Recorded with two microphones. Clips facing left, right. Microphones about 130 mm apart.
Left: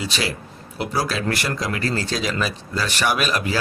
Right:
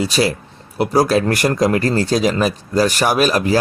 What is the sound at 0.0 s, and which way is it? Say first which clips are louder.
Speech: right 9 dB; 40° right (ahead or behind).